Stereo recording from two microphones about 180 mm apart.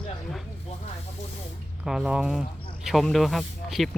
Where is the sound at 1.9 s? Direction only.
5° right (ahead or behind).